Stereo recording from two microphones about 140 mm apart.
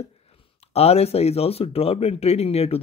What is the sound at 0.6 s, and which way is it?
Speech, 45° left (ahead or behind).